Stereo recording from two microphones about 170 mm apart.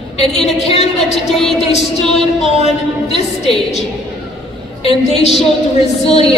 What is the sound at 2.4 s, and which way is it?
Speech, 40° left (ahead or behind).